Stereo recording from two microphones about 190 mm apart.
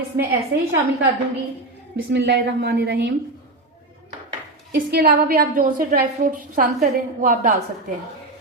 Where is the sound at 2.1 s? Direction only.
60° right (ahead or behind).